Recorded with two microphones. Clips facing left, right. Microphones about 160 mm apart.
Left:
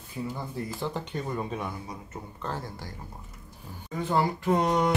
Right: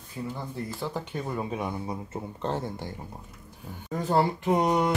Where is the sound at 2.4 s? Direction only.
25° right (ahead or behind).